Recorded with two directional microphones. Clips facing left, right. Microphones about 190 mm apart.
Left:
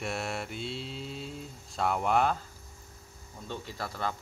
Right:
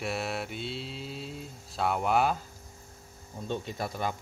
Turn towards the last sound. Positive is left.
turn(degrees=-15)  # may be behind; listen again after turning